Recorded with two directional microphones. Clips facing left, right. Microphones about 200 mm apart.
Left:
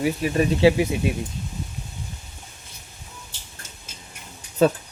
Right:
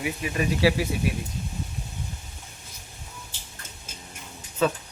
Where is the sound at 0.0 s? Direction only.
35° left (ahead or behind).